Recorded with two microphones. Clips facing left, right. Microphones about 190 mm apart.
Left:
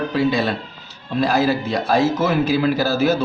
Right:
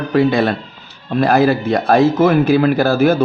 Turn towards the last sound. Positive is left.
turn(degrees=-55)  # may be behind; listen again after turning